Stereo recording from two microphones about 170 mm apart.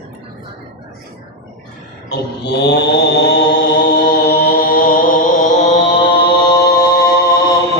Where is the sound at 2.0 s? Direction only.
80° left; by 3.6 s 65° left (ahead or behind).